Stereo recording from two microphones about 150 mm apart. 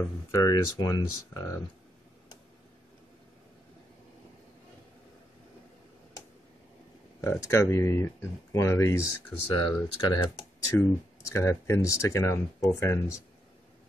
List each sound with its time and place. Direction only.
0.3 s speech: 25° left (ahead or behind)
7.2 s speech: 15° left (ahead or behind)
9.6 s speech: 30° left (ahead or behind)